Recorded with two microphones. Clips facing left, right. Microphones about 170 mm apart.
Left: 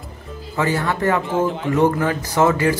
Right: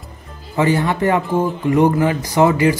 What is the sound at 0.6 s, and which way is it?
A man's voice, 20° right (ahead or behind).